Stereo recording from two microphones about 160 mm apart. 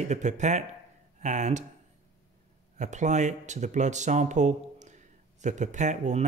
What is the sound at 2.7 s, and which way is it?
Speech, 50° right (ahead or behind).